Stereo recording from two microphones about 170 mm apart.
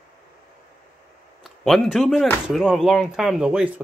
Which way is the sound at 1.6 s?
Centre (ahead or behind).